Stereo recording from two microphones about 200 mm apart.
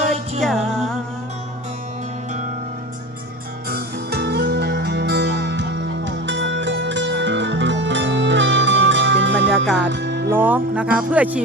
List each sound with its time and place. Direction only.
0.4 s music: centre (ahead or behind)
3.7 s music: 50° right (ahead or behind)
10.3 s speech: 10° right (ahead or behind)